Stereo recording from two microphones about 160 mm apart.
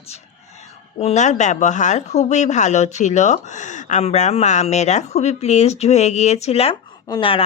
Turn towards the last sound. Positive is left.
turn(degrees=35)  # may be behind; listen again after turning